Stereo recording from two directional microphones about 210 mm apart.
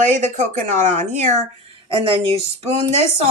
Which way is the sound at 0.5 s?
40° right (ahead or behind).